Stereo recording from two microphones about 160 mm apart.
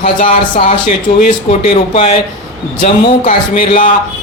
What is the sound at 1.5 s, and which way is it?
Speech, 40° left (ahead or behind).